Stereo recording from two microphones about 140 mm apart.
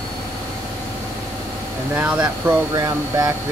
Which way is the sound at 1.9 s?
10° right (ahead or behind).